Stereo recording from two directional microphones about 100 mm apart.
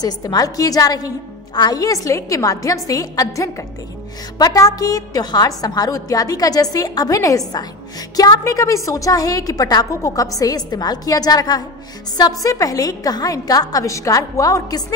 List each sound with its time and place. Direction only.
0.0 s a woman's voice: 40° left (ahead or behind)